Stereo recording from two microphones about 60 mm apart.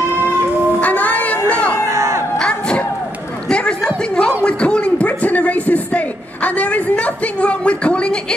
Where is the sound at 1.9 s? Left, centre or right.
Right.